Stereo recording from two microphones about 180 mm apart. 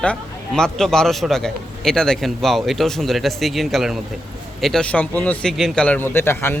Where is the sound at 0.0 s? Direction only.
5° left (ahead or behind).